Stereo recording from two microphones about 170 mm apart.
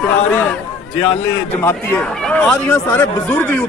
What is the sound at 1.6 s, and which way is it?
Speech, 10° left (ahead or behind).